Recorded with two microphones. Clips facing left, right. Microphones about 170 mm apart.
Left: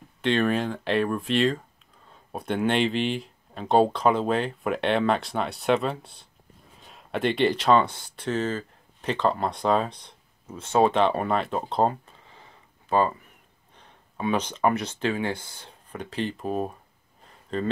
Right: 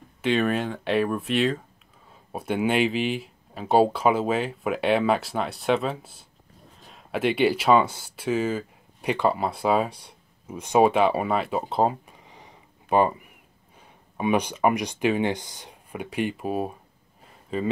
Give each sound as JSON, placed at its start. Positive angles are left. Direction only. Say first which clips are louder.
{"t": 0.2, "sound": "speech", "louder": "even", "side_deg": -5}
{"t": 12.2, "sound": "a sound", "louder": "right 3 dB", "side_deg": -15}
{"t": 13.7, "sound": "speech", "louder": "right 3 dB", "side_deg": -10}